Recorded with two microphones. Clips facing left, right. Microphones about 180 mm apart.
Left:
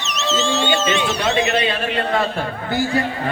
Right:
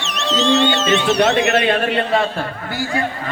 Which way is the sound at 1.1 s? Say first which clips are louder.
Right 4 dB; 60° right (ahead or behind).